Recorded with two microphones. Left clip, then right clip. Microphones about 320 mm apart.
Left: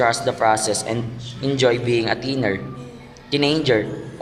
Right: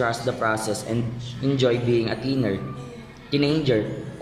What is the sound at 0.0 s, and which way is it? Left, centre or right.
A man's voice, left.